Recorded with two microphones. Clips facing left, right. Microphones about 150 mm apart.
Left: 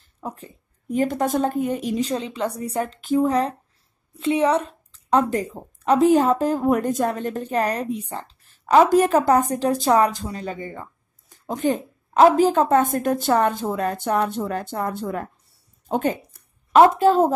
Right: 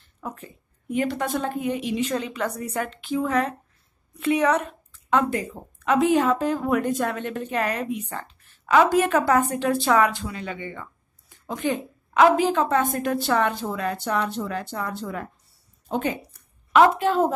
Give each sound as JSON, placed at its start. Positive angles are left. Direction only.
{"t": 0.2, "sound": "a woman's voice", "side_deg": 35}